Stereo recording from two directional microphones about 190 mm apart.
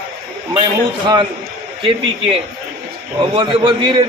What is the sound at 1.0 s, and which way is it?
Speech, 25° right (ahead or behind).